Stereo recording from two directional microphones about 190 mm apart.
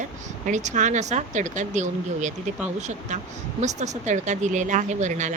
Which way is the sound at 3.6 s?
35° right (ahead or behind).